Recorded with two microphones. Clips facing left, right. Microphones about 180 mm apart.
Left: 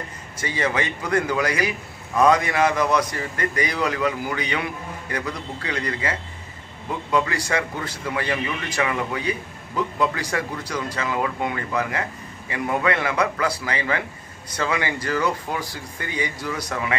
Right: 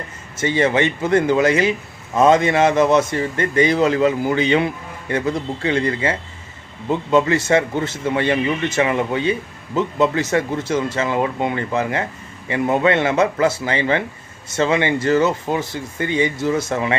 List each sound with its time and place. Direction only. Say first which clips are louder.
0.4 s a man's voice: right 7 dB; 25° right (ahead or behind)